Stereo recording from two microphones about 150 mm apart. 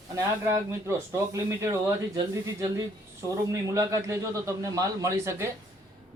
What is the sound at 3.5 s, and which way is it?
Speech, 20° right (ahead or behind).